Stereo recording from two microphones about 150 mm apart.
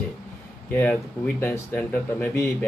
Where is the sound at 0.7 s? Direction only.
10° left (ahead or behind).